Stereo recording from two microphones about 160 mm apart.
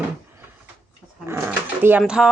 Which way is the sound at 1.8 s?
10° right (ahead or behind).